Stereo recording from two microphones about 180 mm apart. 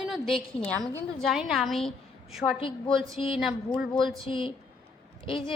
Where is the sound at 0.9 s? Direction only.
15° right (ahead or behind).